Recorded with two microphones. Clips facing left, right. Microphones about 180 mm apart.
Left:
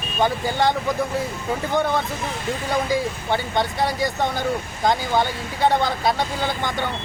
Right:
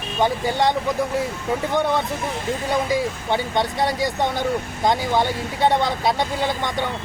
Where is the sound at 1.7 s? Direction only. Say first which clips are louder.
Left 1 dB; centre (ahead or behind).